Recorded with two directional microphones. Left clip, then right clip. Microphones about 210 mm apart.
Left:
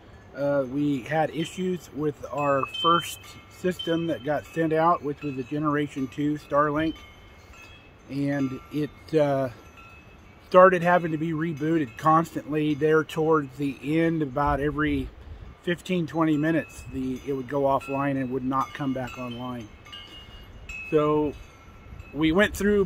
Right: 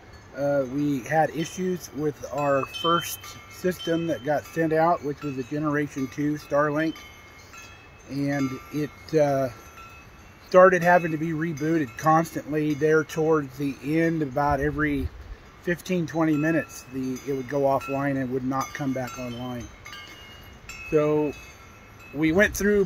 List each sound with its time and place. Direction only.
0.4 s speech: 5° left (ahead or behind)
8.1 s speech: 5° left (ahead or behind)
10.5 s speech: 5° left (ahead or behind)
16.1 s speech: 5° left (ahead or behind)
19.2 s a sound: 20° left (ahead or behind)
20.9 s wind chime: 10° left (ahead or behind)
22.2 s speech: 5° left (ahead or behind)